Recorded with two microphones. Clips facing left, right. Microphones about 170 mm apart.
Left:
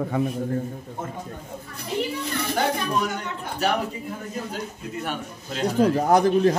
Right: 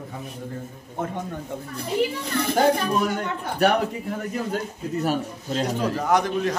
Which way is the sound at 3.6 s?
60° right (ahead or behind).